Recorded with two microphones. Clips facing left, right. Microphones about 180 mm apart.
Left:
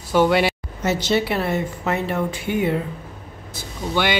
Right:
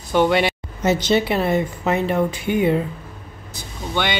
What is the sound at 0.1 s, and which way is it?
Speech, 5° left (ahead or behind).